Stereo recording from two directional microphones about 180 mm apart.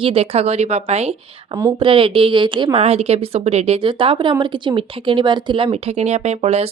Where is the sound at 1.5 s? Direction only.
25° right (ahead or behind).